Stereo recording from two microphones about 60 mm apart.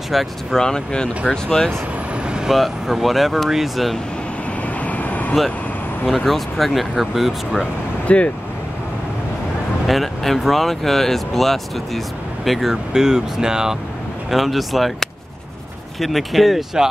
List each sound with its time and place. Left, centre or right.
0.1 s speech: centre
0.6 s speech: centre
2.2 s vehicle: centre
2.5 s speech: centre
4.7 s vehicle: left
6.0 s speech: centre
8.1 s speech: left
9.8 s speech: centre